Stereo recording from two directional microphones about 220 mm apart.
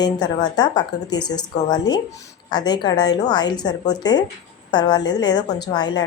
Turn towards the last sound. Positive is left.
turn(degrees=20)  # may be behind; listen again after turning